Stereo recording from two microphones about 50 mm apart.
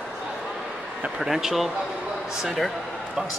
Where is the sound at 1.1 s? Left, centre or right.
Centre.